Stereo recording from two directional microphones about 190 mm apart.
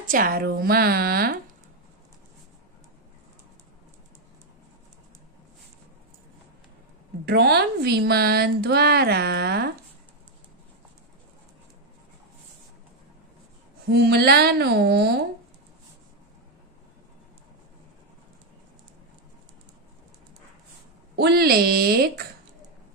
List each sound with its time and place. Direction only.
0.0 s speech: 45° right (ahead or behind)
7.2 s speech: 60° right (ahead or behind)
13.8 s speech: 60° right (ahead or behind)
21.2 s speech: 55° right (ahead or behind)